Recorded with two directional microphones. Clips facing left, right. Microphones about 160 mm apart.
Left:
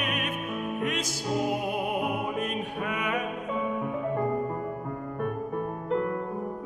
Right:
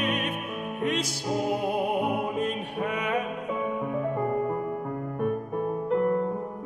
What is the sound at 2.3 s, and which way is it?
Music, 30° right (ahead or behind).